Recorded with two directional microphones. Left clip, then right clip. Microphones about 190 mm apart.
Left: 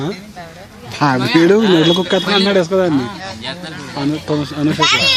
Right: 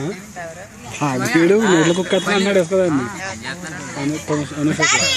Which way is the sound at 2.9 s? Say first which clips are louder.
Left 3 dB; 40° left (ahead or behind).